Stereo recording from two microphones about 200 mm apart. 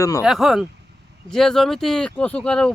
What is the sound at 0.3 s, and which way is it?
Speech, centre (ahead or behind).